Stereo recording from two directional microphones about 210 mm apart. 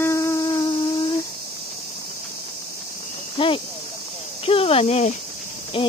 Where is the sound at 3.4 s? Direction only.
25° left (ahead or behind).